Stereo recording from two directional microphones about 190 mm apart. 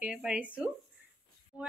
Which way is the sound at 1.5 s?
5° right (ahead or behind).